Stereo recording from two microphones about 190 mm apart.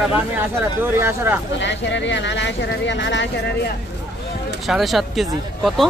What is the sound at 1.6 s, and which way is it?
Speech, 70° left (ahead or behind).